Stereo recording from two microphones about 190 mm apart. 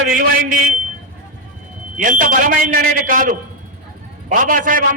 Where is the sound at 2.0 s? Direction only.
45° right (ahead or behind).